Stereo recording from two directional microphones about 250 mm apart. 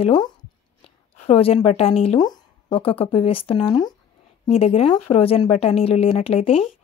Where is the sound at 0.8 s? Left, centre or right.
Left.